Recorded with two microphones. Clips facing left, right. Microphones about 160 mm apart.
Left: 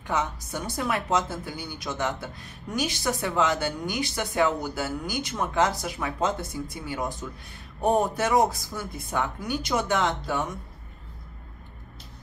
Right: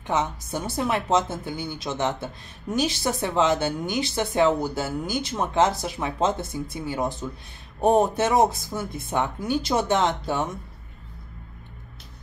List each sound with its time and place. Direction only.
0.0 s a woman's voice: 25° right (ahead or behind)